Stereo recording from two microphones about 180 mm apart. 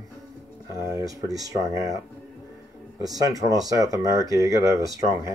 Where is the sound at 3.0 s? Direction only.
20° right (ahead or behind).